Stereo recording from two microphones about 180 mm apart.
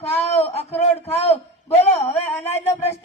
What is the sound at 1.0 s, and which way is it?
Speech, 35° left (ahead or behind).